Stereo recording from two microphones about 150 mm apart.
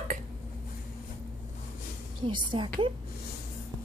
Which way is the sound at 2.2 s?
35° right (ahead or behind).